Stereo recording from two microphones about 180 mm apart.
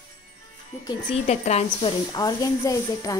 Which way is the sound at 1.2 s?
40° left (ahead or behind).